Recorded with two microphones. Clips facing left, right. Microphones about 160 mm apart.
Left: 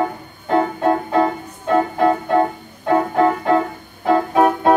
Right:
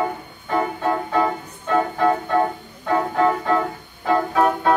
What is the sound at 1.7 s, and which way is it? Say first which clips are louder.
Music: left 3 dB; 40° left (ahead or behind).